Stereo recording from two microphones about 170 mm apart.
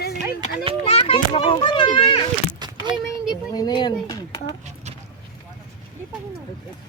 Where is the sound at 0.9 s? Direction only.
35° left (ahead or behind).